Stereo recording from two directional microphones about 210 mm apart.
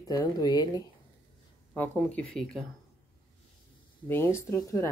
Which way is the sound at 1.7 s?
5° left (ahead or behind).